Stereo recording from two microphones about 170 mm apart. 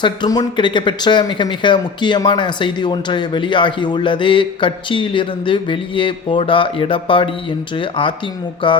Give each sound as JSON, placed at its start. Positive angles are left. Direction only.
{"t": 0.0, "sound": "speech", "side_deg": 25}